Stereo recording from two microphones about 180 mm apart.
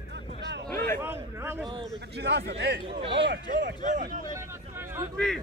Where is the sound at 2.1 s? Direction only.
65° right (ahead or behind).